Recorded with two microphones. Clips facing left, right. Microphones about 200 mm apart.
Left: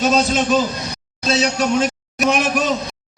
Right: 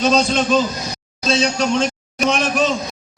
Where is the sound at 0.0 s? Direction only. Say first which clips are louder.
Even; 5° left (ahead or behind).